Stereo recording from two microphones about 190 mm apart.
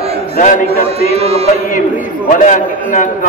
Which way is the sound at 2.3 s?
45° left (ahead or behind).